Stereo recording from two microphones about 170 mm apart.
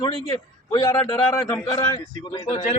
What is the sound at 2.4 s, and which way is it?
Speech, 35° left (ahead or behind).